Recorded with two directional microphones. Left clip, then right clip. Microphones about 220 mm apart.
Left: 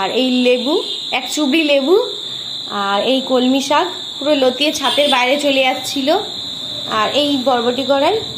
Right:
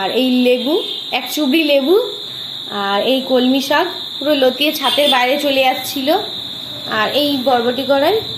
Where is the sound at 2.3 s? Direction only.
Centre (ahead or behind).